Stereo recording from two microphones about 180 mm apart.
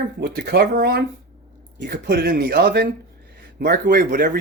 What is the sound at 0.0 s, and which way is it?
Speech, 60° right (ahead or behind).